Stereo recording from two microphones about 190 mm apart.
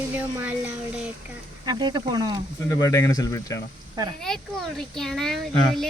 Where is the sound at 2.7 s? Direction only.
20° left (ahead or behind).